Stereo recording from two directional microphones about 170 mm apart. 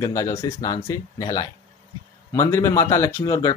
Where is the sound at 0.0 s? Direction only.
20° left (ahead or behind).